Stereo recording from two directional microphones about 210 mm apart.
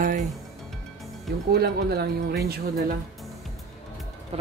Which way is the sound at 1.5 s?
50° right (ahead or behind).